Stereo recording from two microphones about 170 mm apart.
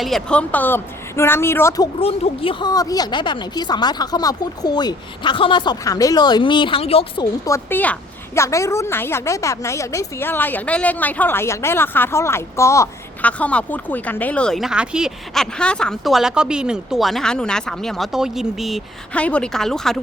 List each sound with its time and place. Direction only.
0.0 s a woman's voice: 5° left (ahead or behind)
2.0 s speech: 35° left (ahead or behind)
7.4 s a woman's voice: 15° left (ahead or behind)